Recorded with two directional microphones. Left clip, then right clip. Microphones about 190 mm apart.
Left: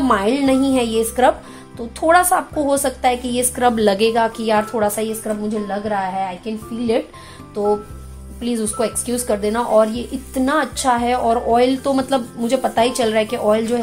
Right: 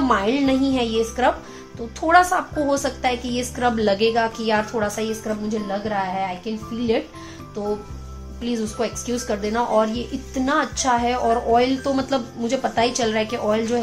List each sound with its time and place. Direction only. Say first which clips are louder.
0.1 s speech: left 4 dB; 35° left (ahead or behind)
8.4 s speech: left 4 dB; 35° left (ahead or behind)